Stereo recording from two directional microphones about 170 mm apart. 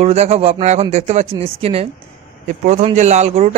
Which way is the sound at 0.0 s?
40° right (ahead or behind).